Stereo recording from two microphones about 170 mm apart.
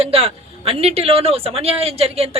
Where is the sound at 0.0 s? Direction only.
35° right (ahead or behind).